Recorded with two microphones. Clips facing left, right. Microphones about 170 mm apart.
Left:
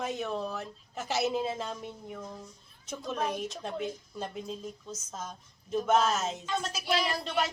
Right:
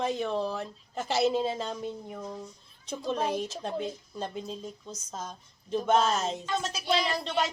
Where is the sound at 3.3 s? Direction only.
5° right (ahead or behind).